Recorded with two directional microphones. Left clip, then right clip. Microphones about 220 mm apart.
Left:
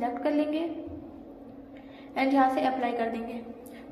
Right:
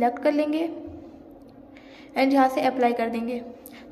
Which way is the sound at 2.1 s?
45° right (ahead or behind).